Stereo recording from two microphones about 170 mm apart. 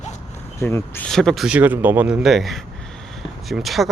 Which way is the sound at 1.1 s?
Centre (ahead or behind).